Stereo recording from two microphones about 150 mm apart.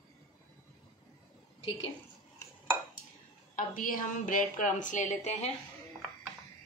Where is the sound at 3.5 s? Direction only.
65° left (ahead or behind).